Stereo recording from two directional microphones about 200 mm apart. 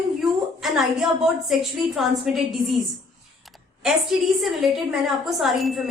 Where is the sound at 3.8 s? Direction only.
Centre (ahead or behind).